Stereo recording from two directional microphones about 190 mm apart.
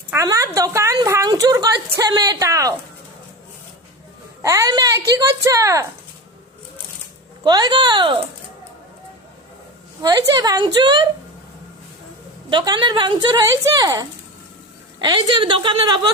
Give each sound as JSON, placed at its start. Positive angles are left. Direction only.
{"t": 0.1, "sound": "a woman's voice", "side_deg": -15}
{"t": 4.4, "sound": "a woman's voice", "side_deg": -15}
{"t": 7.4, "sound": "speech", "side_deg": -20}
{"t": 10.0, "sound": "speech", "side_deg": -20}
{"t": 12.5, "sound": "speech", "side_deg": -25}